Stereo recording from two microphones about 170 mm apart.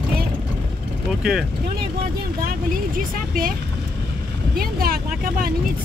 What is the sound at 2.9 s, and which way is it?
Vehicle, 55° right (ahead or behind).